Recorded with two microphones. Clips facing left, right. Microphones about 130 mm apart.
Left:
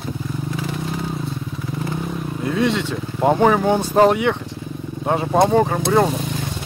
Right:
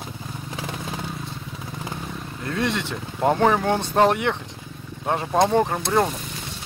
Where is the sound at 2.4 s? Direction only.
15° left (ahead or behind).